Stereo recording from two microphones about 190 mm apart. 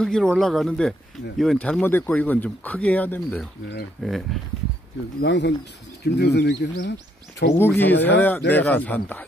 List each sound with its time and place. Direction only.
0.0 s speech: 5° left (ahead or behind)
5.2 s speech: 65° left (ahead or behind)
7.5 s speech: 10° left (ahead or behind)